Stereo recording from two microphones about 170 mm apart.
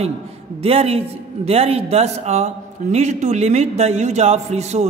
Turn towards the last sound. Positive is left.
turn(degrees=-40)  # may be behind; listen again after turning